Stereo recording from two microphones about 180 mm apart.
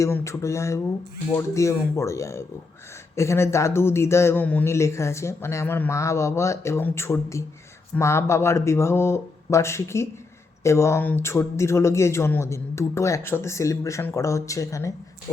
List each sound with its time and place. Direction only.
0.0 s a man's voice: 15° left (ahead or behind)